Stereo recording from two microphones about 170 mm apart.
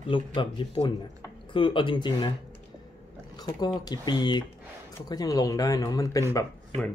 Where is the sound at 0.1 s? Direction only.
30° left (ahead or behind).